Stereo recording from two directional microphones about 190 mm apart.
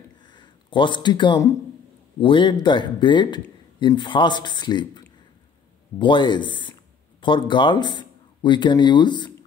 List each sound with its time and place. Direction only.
0.3 s speech: 25° left (ahead or behind)